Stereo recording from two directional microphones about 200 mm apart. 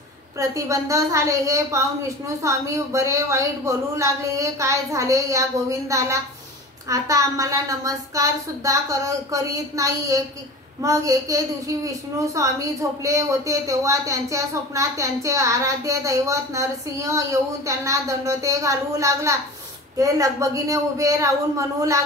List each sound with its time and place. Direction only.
0.4 s a woman's voice: 15° right (ahead or behind)